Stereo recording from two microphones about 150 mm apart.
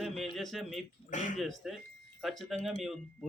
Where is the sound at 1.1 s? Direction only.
55° left (ahead or behind).